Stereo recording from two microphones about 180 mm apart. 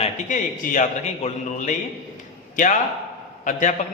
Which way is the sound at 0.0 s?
40° left (ahead or behind).